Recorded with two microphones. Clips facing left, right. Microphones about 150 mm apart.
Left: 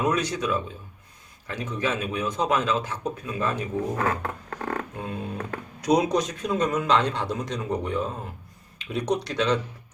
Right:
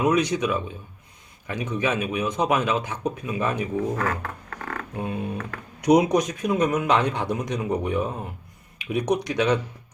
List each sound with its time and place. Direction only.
0.0 s speech: 15° right (ahead or behind)
3.9 s a sound: 25° left (ahead or behind)
4.9 s speech: 15° right (ahead or behind)